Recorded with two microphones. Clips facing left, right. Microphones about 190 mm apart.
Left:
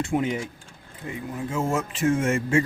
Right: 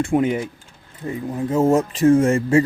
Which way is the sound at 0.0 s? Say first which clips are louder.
Right 6 dB; 55° right (ahead or behind).